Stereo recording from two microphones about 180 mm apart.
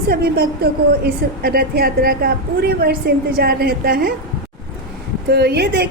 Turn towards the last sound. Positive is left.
turn(degrees=-65)  # may be behind; listen again after turning